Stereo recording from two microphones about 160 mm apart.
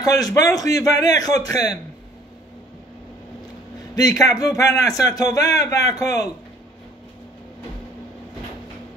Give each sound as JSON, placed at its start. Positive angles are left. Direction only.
{"t": 0.0, "sound": "a man's voice", "side_deg": 20}
{"t": 3.9, "sound": "a man's voice", "side_deg": 25}